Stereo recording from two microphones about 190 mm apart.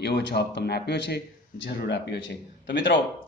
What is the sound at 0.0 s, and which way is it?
Speech, 60° left (ahead or behind).